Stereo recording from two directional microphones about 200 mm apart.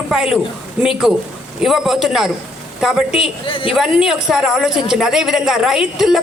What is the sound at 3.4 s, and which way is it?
Speech, 25° left (ahead or behind).